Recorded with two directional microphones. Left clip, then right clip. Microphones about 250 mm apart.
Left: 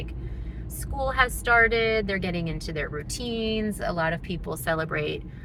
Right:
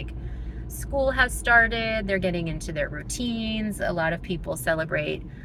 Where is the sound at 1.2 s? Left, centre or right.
Centre.